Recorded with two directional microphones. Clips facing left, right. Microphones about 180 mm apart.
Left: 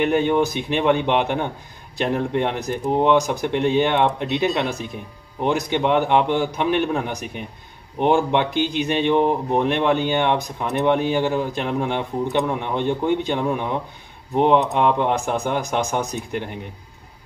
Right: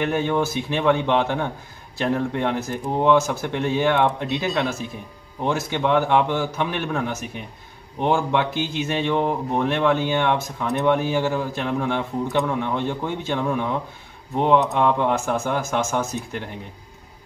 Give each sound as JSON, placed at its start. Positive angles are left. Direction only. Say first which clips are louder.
{"t": 0.0, "sound": "speech", "louder": "left 3 dB", "side_deg": 20}